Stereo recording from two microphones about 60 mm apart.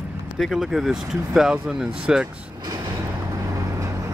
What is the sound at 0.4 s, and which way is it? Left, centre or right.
Speech, centre.